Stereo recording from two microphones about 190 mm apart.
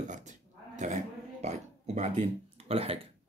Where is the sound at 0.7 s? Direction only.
40° right (ahead or behind).